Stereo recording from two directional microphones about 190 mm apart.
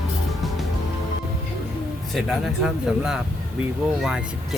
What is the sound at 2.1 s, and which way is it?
Speech, centre (ahead or behind).